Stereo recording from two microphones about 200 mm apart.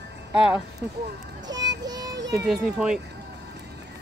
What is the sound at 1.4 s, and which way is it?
Speech, 20° right (ahead or behind).